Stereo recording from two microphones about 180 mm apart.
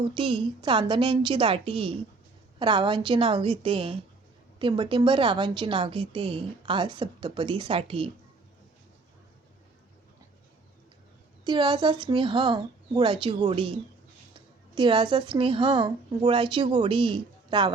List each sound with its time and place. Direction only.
0.1 s a woman's voice: 30° right (ahead or behind)
11.4 s a woman's voice: 25° right (ahead or behind)
14.8 s a woman's voice: 25° right (ahead or behind)